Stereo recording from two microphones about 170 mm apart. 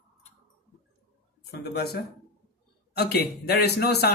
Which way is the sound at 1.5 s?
70° left (ahead or behind).